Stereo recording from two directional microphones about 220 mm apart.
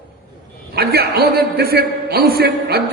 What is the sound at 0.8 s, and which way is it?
A man's voice, 45° right (ahead or behind).